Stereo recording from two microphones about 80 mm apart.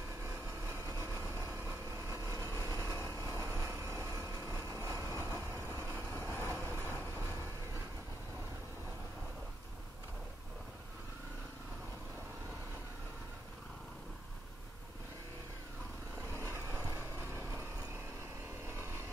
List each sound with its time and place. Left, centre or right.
0.7 s vehicle: right
2.5 s vehicle: left
2.8 s vehicle: right
16.3 s vehicle: right
18.7 s vehicle: right